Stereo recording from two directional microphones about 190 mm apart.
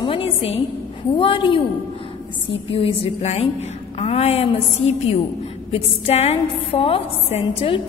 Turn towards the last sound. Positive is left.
turn(degrees=30)  # may be behind; listen again after turning